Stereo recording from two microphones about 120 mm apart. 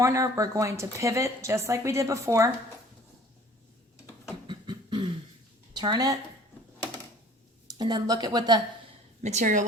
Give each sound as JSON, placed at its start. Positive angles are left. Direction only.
{"t": 0.0, "sound": "a woman's voice", "side_deg": -25}
{"t": 4.4, "sound": "beatboxing", "side_deg": -40}
{"t": 5.7, "sound": "speech", "side_deg": -35}
{"t": 7.7, "sound": "speech", "side_deg": -35}
{"t": 9.2, "sound": "a woman's voice", "side_deg": -80}